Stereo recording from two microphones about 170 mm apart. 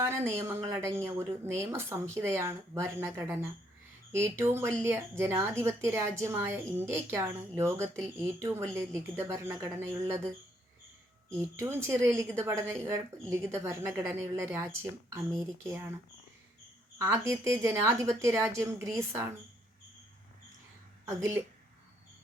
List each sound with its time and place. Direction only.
0.3 s a woman's voice: 15° right (ahead or behind)
11.3 s a woman's voice: 15° right (ahead or behind)
17.0 s a woman's voice: 15° right (ahead or behind)
21.0 s a woman's voice: 15° right (ahead or behind)